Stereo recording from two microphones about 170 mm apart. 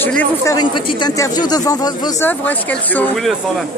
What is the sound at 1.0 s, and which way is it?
Speech, 20° left (ahead or behind).